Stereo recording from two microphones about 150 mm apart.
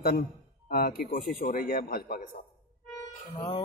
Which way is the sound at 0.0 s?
80° left.